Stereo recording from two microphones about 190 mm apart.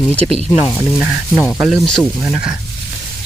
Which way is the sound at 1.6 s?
Centre (ahead or behind).